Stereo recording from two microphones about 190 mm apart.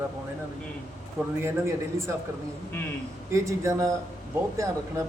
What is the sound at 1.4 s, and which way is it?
Speech, 15° right (ahead or behind).